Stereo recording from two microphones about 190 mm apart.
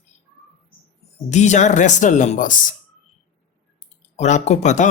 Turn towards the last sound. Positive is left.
turn(degrees=40)  # may be behind; listen again after turning